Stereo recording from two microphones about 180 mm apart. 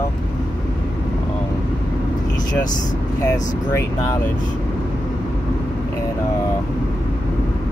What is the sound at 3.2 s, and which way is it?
Speech, 20° left (ahead or behind).